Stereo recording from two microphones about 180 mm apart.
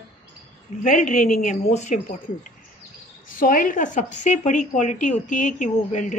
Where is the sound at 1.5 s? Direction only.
40° left (ahead or behind).